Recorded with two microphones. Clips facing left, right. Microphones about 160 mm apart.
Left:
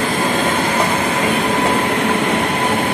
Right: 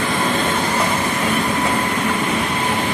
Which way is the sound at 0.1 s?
45° left (ahead or behind).